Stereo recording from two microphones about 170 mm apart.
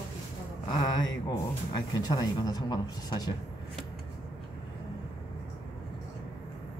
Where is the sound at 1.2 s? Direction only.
25° left (ahead or behind).